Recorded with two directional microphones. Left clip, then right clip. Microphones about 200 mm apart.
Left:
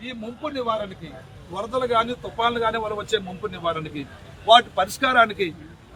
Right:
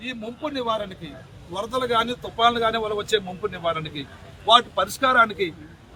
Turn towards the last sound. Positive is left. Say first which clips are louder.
# even
turn(degrees=-5)  # may be behind; listen again after turning